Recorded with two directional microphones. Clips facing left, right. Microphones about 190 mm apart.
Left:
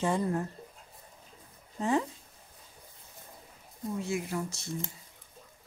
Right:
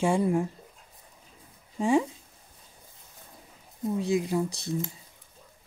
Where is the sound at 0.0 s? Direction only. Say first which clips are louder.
Right 5 dB; 10° right (ahead or behind).